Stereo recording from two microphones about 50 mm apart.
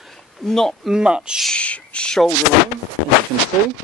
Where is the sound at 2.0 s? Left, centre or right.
Centre.